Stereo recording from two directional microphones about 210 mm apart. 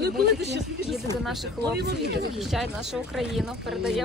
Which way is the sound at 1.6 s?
50° right (ahead or behind).